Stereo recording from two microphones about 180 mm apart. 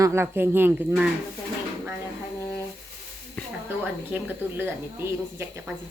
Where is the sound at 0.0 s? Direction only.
15° right (ahead or behind).